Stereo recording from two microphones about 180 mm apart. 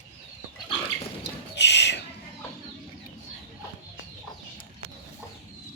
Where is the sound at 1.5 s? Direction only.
75° left (ahead or behind).